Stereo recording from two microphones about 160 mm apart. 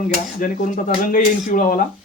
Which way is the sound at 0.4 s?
60° left (ahead or behind).